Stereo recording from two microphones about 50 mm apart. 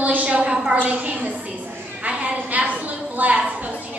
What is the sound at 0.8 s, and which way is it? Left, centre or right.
Speech, right.